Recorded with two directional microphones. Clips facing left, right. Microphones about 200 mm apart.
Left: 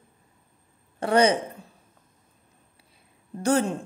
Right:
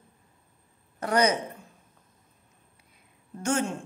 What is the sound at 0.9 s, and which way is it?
Speech, 30° left (ahead or behind).